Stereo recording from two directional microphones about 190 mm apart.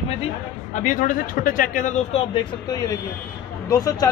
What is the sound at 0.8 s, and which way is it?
A man's voice, 45° left (ahead or behind).